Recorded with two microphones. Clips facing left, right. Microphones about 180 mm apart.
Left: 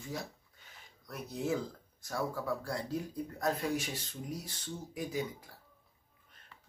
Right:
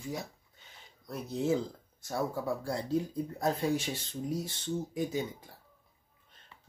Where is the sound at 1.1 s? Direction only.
25° right (ahead or behind).